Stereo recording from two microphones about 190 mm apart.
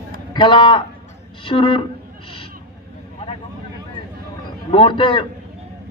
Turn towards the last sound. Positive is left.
turn(degrees=25)  # may be behind; listen again after turning